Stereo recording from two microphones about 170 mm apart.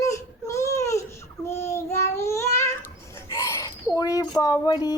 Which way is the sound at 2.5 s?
15° left (ahead or behind).